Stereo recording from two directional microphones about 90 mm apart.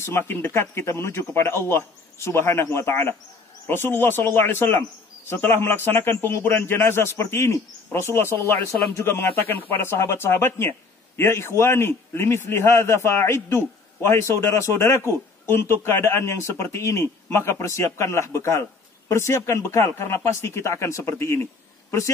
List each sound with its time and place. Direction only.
0.3 s speech: 25° left (ahead or behind)